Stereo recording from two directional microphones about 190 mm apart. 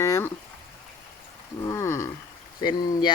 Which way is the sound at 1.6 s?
15° left (ahead or behind).